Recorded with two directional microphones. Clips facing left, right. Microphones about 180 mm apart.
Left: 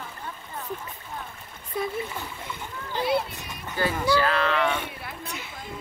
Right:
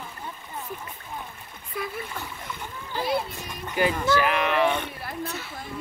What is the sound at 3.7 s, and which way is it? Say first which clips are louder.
Speech: right 1 dB; 15° right (ahead or behind).